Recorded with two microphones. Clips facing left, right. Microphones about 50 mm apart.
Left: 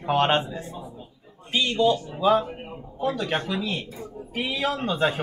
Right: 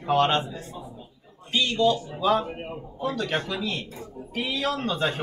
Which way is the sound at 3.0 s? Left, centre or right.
Centre.